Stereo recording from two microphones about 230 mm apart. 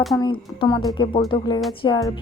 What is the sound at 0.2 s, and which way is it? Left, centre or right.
A woman's voice, centre.